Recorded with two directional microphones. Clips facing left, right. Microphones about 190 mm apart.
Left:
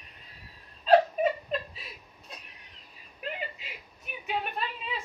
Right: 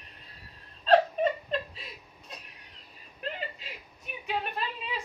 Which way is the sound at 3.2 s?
5° left (ahead or behind).